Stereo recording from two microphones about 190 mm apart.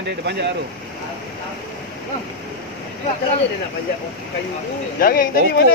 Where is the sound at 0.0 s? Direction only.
60° right (ahead or behind).